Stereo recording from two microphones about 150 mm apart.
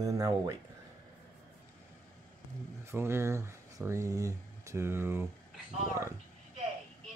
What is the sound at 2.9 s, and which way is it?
Speech, 15° right (ahead or behind).